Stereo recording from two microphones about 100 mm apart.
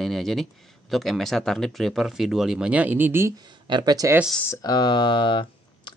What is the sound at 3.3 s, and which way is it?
Speech, 50° right (ahead or behind).